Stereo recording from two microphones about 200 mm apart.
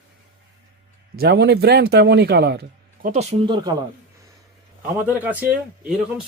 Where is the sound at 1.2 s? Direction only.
55° right (ahead or behind).